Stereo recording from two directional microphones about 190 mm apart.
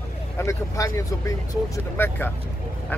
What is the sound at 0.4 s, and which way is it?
Speech, 15° left (ahead or behind).